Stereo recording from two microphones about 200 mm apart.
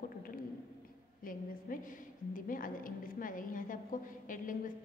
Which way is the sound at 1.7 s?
45° left (ahead or behind).